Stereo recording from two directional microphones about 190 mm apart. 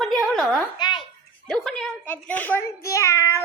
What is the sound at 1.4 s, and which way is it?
A child's voice, centre (ahead or behind).